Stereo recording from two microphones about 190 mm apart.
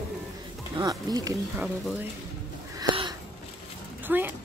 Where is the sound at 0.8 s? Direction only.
20° right (ahead or behind).